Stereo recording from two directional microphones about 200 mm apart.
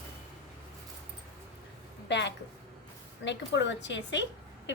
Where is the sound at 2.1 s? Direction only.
60° left (ahead or behind).